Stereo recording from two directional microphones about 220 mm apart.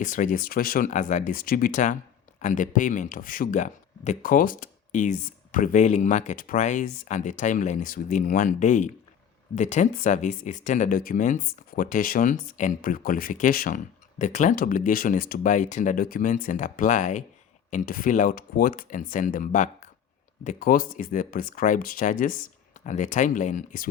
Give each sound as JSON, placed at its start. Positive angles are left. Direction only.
{"t": 0.0, "sound": "speech", "side_deg": 35}